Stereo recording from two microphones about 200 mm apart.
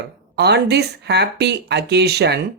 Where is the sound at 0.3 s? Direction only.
55° right (ahead or behind).